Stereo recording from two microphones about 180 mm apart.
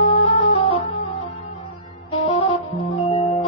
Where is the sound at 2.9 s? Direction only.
35° left (ahead or behind).